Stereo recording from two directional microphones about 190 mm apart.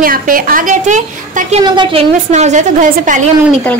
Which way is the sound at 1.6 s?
25° right (ahead or behind).